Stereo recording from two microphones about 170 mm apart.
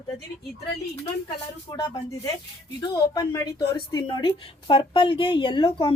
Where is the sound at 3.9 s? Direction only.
30° left (ahead or behind).